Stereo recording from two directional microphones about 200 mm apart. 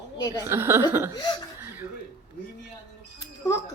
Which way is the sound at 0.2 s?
20° left (ahead or behind).